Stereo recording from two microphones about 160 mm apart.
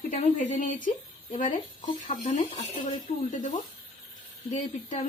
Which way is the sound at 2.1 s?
35° left (ahead or behind).